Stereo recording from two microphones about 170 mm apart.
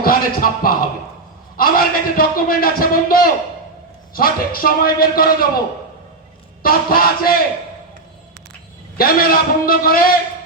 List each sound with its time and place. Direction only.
0.0 s a man's voice: 60° left (ahead or behind)
6.6 s a man's voice: 60° left (ahead or behind)
9.0 s a man's voice: 60° left (ahead or behind)